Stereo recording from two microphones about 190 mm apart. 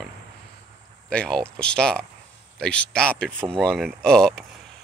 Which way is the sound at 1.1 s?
5° left (ahead or behind).